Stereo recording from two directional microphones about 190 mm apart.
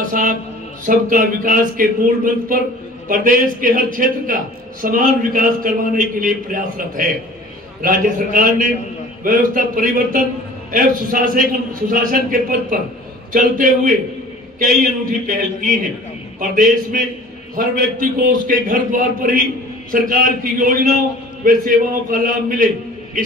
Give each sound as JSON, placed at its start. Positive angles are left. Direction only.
{"t": 0.1, "sound": "a man's voice", "side_deg": -45}